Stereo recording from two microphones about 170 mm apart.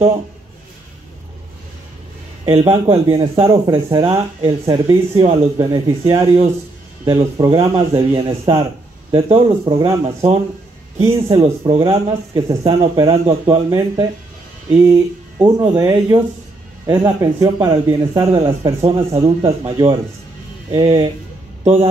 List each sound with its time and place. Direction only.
2.5 s a man's voice: 35° right (ahead or behind)
18.8 s a man's voice: 35° right (ahead or behind)